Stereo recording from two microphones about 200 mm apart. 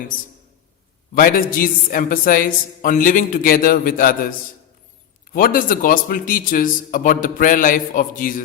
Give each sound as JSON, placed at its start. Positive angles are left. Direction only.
{"t": 1.1, "sound": "a man's voice", "side_deg": 45}